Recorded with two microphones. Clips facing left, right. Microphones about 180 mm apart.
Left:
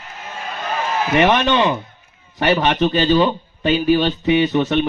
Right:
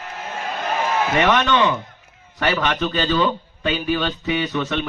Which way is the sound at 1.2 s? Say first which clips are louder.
Left 3 dB; 25° left (ahead or behind).